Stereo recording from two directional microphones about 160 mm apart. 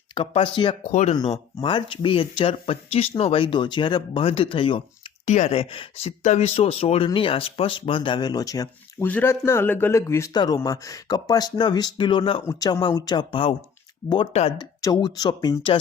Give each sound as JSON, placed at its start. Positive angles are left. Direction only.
{"t": 0.1, "sound": "speech", "side_deg": 35}
{"t": 0.9, "sound": "speech", "side_deg": 45}
{"t": 1.6, "sound": "speech", "side_deg": 30}
{"t": 5.2, "sound": "a man's voice", "side_deg": 45}
{"t": 12.5, "sound": "a man's voice", "side_deg": 20}
{"t": 14.6, "sound": "a man's voice", "side_deg": 25}